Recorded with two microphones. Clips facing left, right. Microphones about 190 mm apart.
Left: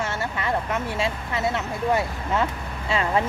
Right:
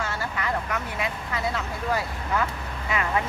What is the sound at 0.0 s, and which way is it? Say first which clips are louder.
Speech: left 2 dB; 25° left (ahead or behind).